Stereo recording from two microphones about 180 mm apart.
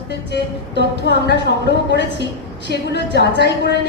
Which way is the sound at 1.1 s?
70° left (ahead or behind).